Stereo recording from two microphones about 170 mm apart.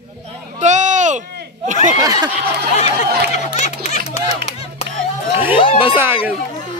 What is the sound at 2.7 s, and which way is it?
Speech, 40° left (ahead or behind).